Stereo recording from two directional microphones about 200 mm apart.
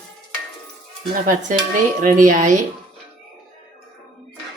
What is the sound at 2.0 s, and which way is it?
Speech, 40° right (ahead or behind).